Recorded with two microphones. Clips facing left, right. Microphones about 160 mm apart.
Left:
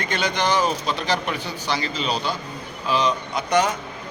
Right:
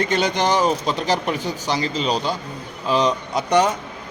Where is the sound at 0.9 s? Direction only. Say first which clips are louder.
Right 3 dB; 45° right (ahead or behind).